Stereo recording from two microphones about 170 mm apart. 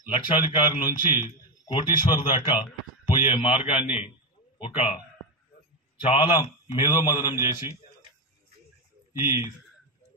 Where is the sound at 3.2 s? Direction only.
35° left (ahead or behind).